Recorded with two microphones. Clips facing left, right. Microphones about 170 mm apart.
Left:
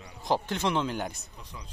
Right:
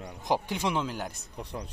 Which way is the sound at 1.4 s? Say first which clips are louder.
Right 12 dB; 65° right (ahead or behind).